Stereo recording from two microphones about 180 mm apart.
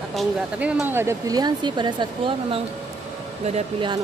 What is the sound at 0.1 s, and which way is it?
Speech, 5° right (ahead or behind).